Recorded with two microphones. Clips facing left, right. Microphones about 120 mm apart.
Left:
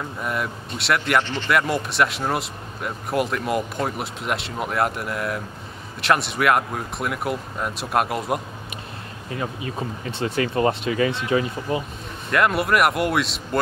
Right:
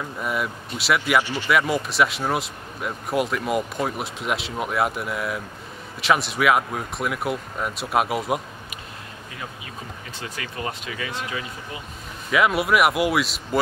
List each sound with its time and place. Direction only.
0.2 s speech: centre (ahead or behind)
10.1 s speech: 30° left (ahead or behind)
12.3 s speech: centre (ahead or behind)